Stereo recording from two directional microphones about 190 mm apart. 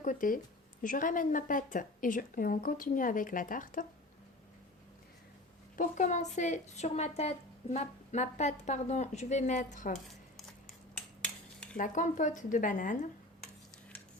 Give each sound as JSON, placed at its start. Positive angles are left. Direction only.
{"t": 0.0, "sound": "a woman's voice", "side_deg": 45}
{"t": 5.7, "sound": "a woman's voice", "side_deg": 45}
{"t": 11.2, "sound": "a sound", "side_deg": 5}
{"t": 11.8, "sound": "a woman's voice", "side_deg": 40}